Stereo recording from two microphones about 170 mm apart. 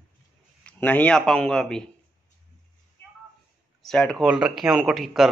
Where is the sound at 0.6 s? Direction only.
10° left (ahead or behind).